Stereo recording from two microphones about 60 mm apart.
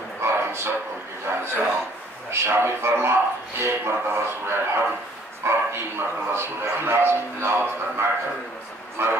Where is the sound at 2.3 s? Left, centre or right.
Right.